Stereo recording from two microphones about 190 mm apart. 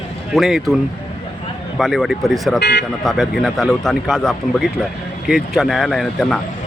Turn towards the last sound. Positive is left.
turn(degrees=0)  # may be behind; listen again after turning